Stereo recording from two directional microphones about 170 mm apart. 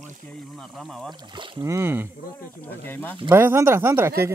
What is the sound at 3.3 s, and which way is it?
Speech, 15° right (ahead or behind).